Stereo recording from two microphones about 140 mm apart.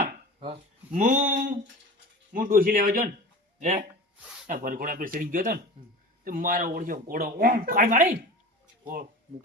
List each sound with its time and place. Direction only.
0.3 s speech: 50° right (ahead or behind); by 1.5 s 65° right (ahead or behind)
2.3 s speech: 85° right
3.6 s speech: 55° right (ahead or behind)
4.4 s speech: 70° right (ahead or behind)
6.2 s speech: 90° right; by 8.2 s 65° right (ahead or behind)